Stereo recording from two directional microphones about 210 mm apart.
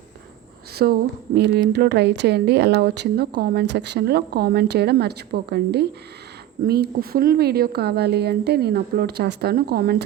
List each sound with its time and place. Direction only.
0.7 s a woman's voice: 50° right (ahead or behind)